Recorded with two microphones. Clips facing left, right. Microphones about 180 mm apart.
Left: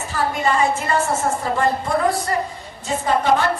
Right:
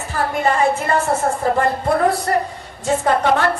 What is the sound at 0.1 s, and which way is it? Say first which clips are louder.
A woman's voice: right 2 dB; 55° right (ahead or behind).